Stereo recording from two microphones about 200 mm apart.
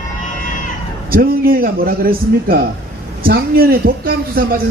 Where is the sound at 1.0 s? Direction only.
45° right (ahead or behind).